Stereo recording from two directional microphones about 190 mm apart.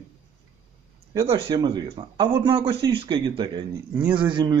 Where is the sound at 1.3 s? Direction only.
25° right (ahead or behind).